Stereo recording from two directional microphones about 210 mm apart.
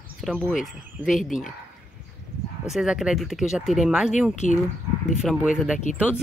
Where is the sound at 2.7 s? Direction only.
Centre (ahead or behind).